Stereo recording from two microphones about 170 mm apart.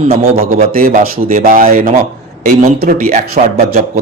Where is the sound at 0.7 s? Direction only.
60° right (ahead or behind); by 4.0 s 40° right (ahead or behind).